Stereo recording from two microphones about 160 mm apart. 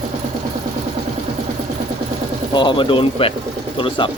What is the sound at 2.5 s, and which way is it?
Speech, 30° left (ahead or behind).